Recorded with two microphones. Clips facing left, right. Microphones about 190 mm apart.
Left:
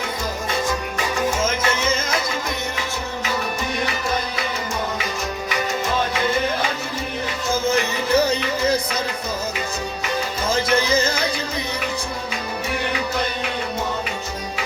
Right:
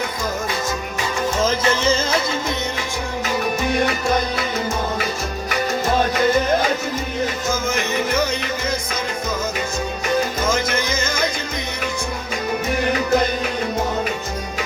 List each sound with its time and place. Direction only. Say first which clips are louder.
1.4 s music: right 3 dB; 35° right (ahead or behind)
7.5 s music: left 1 dB; 35° left (ahead or behind)
10.4 s music: left 1 dB; 35° left (ahead or behind)